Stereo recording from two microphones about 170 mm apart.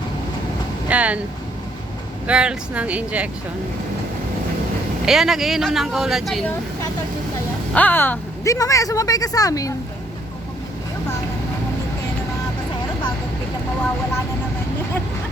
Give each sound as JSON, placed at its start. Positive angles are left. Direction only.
{"t": 0.9, "sound": "a sound", "side_deg": -5}
{"t": 2.2, "sound": "speech", "side_deg": -5}
{"t": 5.0, "sound": "speech", "side_deg": 0}
{"t": 7.7, "sound": "speech", "side_deg": 10}